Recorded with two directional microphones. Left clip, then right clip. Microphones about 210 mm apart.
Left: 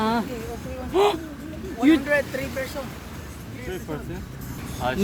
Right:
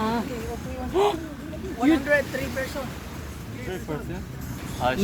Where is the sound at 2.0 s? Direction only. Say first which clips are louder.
Even; 50° left (ahead or behind).